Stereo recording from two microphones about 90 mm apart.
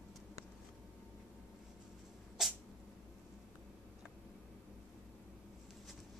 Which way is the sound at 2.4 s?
5° right (ahead or behind).